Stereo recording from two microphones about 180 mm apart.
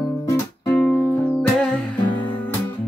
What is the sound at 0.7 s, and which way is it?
Music, 10° left (ahead or behind).